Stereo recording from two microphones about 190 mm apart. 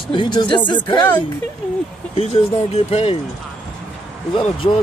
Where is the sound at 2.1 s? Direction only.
30° left (ahead or behind).